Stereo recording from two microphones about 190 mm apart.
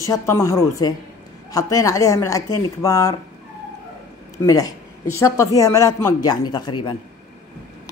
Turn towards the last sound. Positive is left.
turn(degrees=25)  # may be behind; listen again after turning